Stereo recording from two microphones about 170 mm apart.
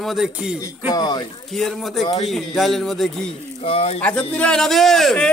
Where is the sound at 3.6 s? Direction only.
35° left (ahead or behind).